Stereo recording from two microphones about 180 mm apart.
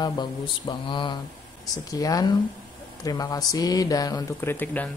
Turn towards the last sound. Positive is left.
turn(degrees=10)  # may be behind; listen again after turning